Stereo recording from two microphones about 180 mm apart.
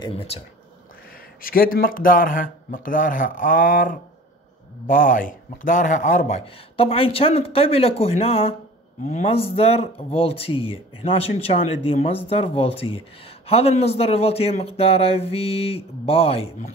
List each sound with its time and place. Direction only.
0.0 s speech: 30° left (ahead or behind)
1.1 s speech: 55° left (ahead or behind); by 16.7 s 35° left (ahead or behind)